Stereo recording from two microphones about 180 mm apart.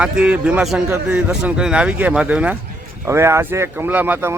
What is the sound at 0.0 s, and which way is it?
A man's voice, 5° right (ahead or behind).